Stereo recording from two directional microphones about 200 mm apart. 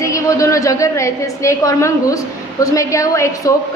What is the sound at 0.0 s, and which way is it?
A woman's voice, 15° left (ahead or behind).